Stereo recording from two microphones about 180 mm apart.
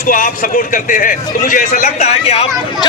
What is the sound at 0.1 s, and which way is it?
A man's voice, 50° left (ahead or behind).